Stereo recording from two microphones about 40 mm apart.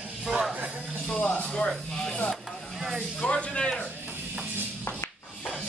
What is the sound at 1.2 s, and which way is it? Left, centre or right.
Speech, left.